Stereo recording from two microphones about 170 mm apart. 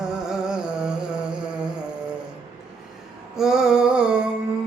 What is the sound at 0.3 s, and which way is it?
Humming, 5° right (ahead or behind).